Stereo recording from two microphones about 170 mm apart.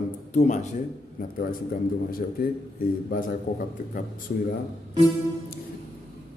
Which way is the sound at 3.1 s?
55° left (ahead or behind).